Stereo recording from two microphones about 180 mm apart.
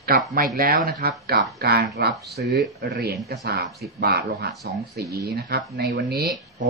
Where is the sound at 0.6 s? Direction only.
50° right (ahead or behind).